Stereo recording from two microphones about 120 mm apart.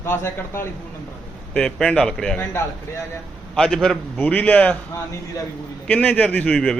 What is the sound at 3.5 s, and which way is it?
Speech, 5° left (ahead or behind).